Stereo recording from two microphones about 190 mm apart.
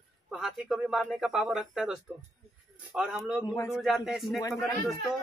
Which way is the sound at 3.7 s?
Centre (ahead or behind).